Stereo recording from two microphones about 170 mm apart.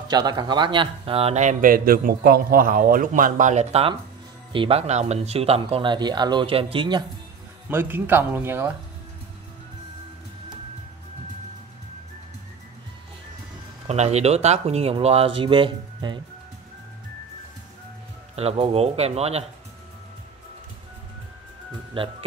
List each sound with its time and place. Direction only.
0.1 s speech: 25° right (ahead or behind)
7.7 s speech: 10° right (ahead or behind)
13.8 s speech: 40° right (ahead or behind)
18.3 s speech: 35° right (ahead or behind)
22.0 s speech: 30° right (ahead or behind)